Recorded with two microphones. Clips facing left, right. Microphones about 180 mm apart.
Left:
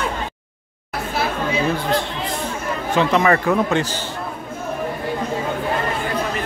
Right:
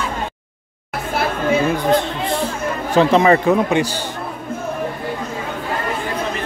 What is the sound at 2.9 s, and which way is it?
A man's voice, 35° right (ahead or behind).